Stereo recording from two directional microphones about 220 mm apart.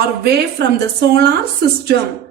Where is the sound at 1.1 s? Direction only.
45° right (ahead or behind).